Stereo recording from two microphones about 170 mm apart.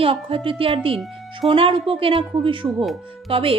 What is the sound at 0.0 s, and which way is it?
Speech, 30° right (ahead or behind).